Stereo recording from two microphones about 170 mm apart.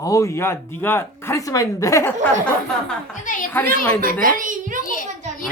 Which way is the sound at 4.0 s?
55° right (ahead or behind).